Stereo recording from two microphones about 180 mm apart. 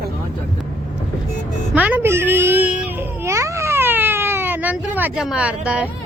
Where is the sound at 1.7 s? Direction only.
10° right (ahead or behind).